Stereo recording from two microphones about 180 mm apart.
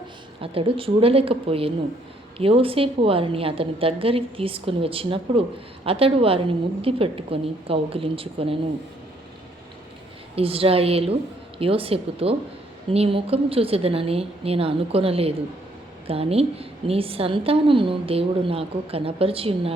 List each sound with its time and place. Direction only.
0.4 s a woman's voice: 30° right (ahead or behind)
10.3 s a woman's voice: 30° right (ahead or behind)